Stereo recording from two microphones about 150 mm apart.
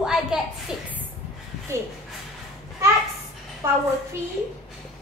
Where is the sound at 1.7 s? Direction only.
20° right (ahead or behind).